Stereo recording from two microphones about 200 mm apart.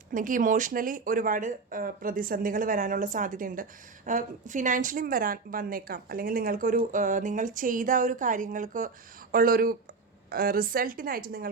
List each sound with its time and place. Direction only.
0.1 s a woman's voice: 40° right (ahead or behind)